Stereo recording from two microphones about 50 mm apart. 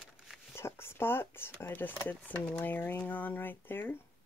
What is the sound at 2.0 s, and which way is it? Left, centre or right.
Speech, left.